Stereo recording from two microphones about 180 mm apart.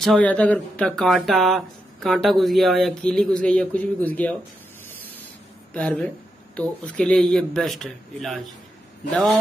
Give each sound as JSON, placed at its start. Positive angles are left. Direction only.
{"t": 0.0, "sound": "speech", "side_deg": 5}
{"t": 5.7, "sound": "speech", "side_deg": 5}